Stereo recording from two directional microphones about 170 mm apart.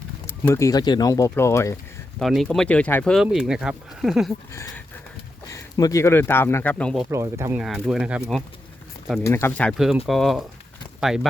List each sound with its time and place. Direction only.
0.3 s speech: 15° left (ahead or behind)
2.1 s speech: centre (ahead or behind)
5.5 s speech: 20° left (ahead or behind)
7.1 s speech: 15° right (ahead or behind)
7.6 s speech: centre (ahead or behind)
9.2 s speech: 15° left (ahead or behind); by 11.3 s centre (ahead or behind)